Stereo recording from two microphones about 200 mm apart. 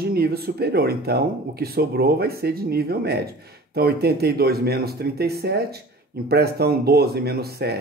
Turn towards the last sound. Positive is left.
turn(degrees=-50)  # may be behind; listen again after turning